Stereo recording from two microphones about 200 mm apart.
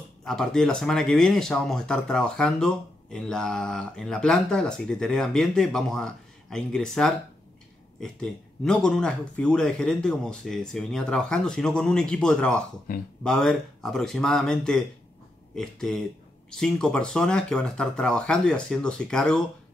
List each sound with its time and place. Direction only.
0.2 s speech: centre (ahead or behind)
12.9 s speech: 45° left (ahead or behind)
13.2 s speech: centre (ahead or behind)